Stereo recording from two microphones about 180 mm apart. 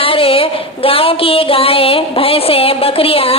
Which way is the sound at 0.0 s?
30° left (ahead or behind).